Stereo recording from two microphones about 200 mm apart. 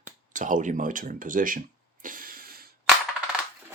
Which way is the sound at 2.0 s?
45° right (ahead or behind).